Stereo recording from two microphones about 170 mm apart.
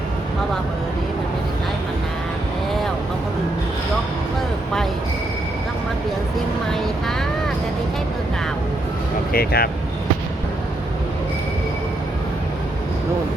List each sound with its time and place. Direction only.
9.3 s speech: 65° left (ahead or behind)